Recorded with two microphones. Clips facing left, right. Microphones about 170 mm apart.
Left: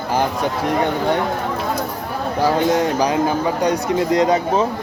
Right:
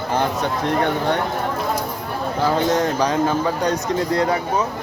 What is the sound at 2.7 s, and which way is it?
Speech, 10° left (ahead or behind).